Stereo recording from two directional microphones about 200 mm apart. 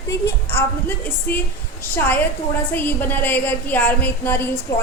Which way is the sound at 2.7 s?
10° left (ahead or behind).